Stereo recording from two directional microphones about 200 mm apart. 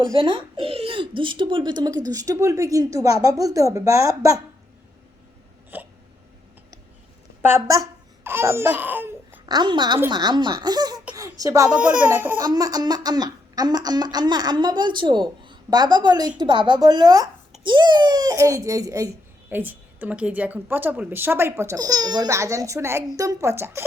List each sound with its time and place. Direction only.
0.0 s a child's voice: 25° right (ahead or behind)
5.7 s hiccup: 10° right (ahead or behind)
7.4 s a child's voice: 15° right (ahead or behind)